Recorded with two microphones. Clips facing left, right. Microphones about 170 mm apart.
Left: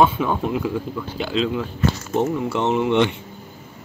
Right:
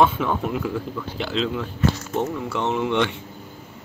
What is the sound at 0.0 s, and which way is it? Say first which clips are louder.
Speech: left 2 dB; 5° left (ahead or behind).